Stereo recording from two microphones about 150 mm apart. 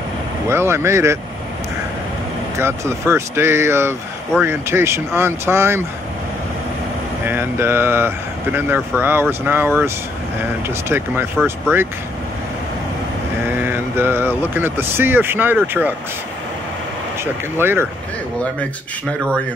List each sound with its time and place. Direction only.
0.5 s speech: 15° right (ahead or behind)
2.6 s speech: 15° right (ahead or behind)
7.2 s speech: 15° right (ahead or behind)
13.5 s speech: 15° right (ahead or behind)
17.2 s speech: 15° right (ahead or behind)